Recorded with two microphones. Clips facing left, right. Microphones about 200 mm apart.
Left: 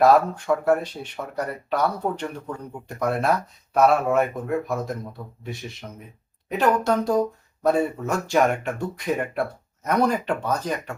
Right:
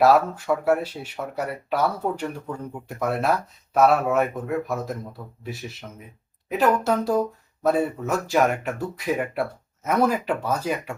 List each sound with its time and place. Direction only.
0.0 s speech: 5° right (ahead or behind)